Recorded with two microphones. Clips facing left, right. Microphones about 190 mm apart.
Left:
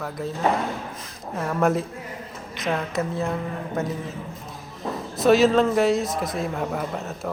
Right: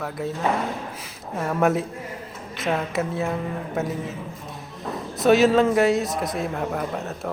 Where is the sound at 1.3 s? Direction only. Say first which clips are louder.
Right 1 dB; 5° right (ahead or behind).